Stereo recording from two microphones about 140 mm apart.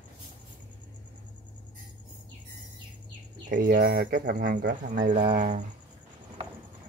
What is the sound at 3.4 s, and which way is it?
Speech, 85° right.